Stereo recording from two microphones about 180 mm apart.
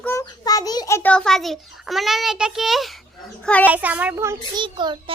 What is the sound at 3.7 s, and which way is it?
A child's voice, 10° right (ahead or behind).